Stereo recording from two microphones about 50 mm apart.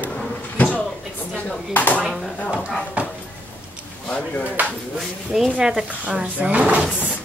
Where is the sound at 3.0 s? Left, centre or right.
Right.